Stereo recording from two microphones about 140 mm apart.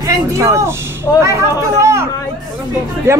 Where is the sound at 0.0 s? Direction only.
20° right (ahead or behind).